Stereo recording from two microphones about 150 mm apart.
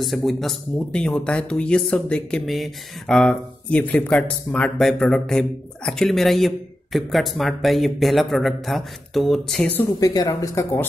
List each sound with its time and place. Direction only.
0.0 s speech: centre (ahead or behind)
9.9 s speech: 25° left (ahead or behind)